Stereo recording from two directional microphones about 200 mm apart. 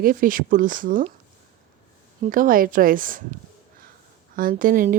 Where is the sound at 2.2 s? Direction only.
45° right (ahead or behind).